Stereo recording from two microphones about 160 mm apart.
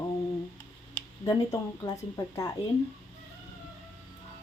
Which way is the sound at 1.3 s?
20° left (ahead or behind).